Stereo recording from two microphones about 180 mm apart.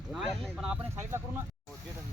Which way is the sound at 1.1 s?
15° right (ahead or behind).